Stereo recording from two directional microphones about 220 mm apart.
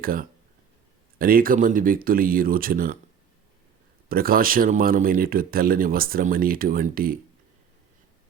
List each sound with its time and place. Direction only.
0.0 s speech: 40° right (ahead or behind)
4.1 s speech: 40° right (ahead or behind)